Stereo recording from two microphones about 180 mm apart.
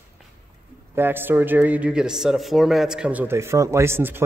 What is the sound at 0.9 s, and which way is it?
Speech, 10° right (ahead or behind).